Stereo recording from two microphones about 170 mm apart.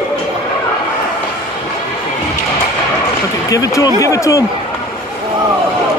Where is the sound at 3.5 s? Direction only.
20° left (ahead or behind).